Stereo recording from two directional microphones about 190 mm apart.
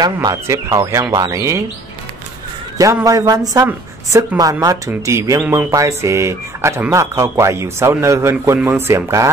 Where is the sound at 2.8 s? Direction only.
15° right (ahead or behind).